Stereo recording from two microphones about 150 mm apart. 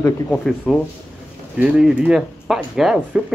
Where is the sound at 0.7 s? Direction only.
Centre (ahead or behind).